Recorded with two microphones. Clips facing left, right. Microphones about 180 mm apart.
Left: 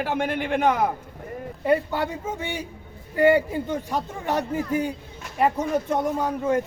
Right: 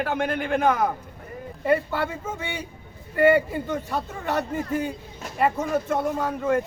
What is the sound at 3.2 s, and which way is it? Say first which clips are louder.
Speech: even; 15° left (ahead or behind).